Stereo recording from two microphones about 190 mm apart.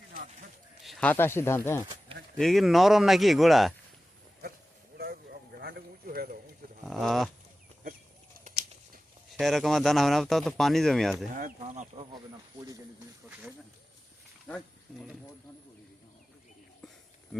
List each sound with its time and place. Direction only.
0.8 s speech: centre (ahead or behind)
2.4 s a man's voice: centre (ahead or behind)
4.9 s clip-clop: 50° right (ahead or behind)
6.8 s speech: centre (ahead or behind)
8.4 s a sound: 50° right (ahead or behind)
9.4 s a man's voice: centre (ahead or behind)
11.3 s speech: 45° right (ahead or behind)
14.4 s a sound: 5° left (ahead or behind)